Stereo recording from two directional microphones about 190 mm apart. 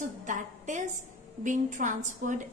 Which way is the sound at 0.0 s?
40° right (ahead or behind).